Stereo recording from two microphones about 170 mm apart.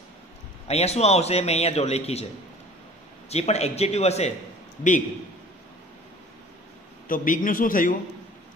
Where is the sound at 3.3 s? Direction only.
40° left (ahead or behind).